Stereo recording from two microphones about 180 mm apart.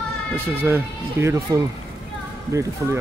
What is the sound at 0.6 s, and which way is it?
A man's voice, 15° right (ahead or behind).